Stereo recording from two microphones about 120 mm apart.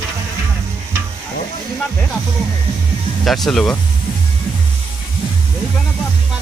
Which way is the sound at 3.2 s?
Centre (ahead or behind).